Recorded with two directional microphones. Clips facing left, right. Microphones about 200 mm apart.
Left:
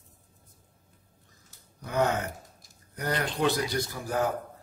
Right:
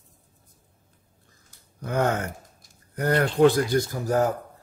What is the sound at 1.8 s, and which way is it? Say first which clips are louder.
A man's voice: right 2 dB; 50° right (ahead or behind).